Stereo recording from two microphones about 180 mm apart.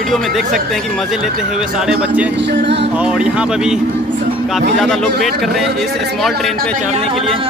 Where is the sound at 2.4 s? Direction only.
75° right (ahead or behind).